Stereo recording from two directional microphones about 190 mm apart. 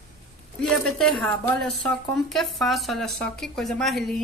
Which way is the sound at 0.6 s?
Centre (ahead or behind).